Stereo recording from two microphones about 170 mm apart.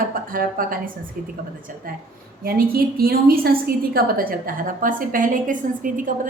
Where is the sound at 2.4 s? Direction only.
60° right (ahead or behind).